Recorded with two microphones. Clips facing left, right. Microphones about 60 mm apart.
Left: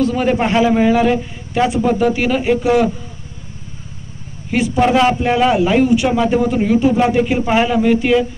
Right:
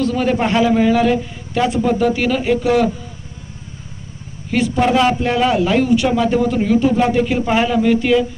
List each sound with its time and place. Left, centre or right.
0.0 s a man's voice: centre
4.5 s a man's voice: centre